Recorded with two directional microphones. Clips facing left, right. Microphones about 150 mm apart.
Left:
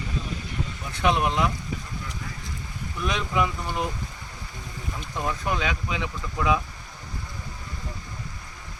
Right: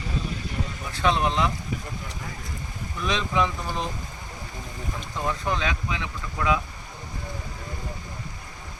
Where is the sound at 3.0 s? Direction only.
5° left (ahead or behind).